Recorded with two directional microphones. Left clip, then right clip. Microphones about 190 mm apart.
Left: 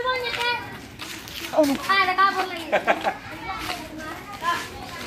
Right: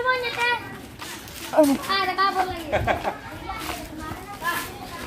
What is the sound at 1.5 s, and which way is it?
Speech, 15° right (ahead or behind).